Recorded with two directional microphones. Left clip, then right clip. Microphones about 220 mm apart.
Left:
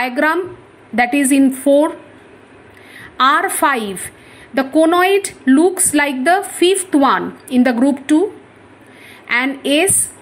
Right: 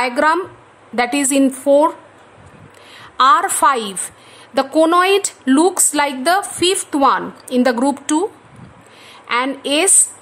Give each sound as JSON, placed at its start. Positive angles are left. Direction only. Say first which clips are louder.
{"t": 0.0, "sound": "a woman's voice", "louder": "right 1 dB", "side_deg": 0}
{"t": 3.2, "sound": "a woman's voice", "louder": "right 1 dB", "side_deg": -10}
{"t": 9.3, "sound": "a woman's voice", "louder": "left 2 dB", "side_deg": -5}